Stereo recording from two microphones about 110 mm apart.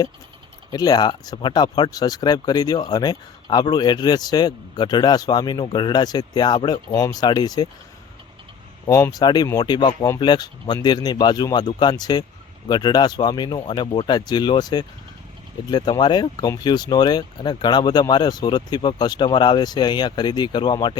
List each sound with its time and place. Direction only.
0.7 s speech: 35° left (ahead or behind)
8.9 s speech: 30° left (ahead or behind)
9.2 s speech: 40° left (ahead or behind)